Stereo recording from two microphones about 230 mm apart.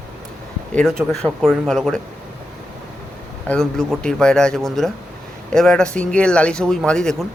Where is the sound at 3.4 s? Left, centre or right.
Centre.